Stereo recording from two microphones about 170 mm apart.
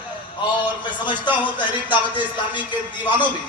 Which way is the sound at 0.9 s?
25° left (ahead or behind).